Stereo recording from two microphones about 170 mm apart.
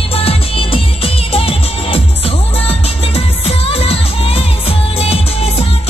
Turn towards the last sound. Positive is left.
turn(degrees=35)  # may be behind; listen again after turning